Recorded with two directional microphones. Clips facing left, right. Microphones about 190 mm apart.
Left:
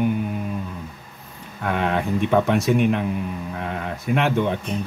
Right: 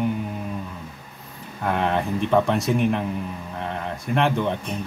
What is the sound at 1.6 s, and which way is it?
Speech, centre (ahead or behind).